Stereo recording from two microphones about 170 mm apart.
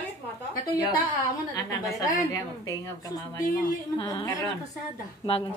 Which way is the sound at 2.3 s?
20° left (ahead or behind).